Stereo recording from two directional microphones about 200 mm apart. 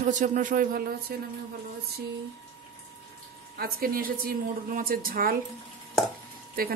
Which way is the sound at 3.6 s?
50° right (ahead or behind).